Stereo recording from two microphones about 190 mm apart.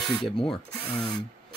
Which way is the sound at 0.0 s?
Centre (ahead or behind).